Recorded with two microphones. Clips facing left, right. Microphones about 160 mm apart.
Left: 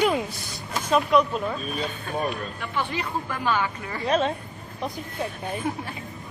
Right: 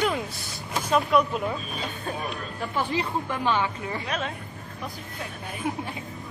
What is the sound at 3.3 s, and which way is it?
Speech, 25° right (ahead or behind).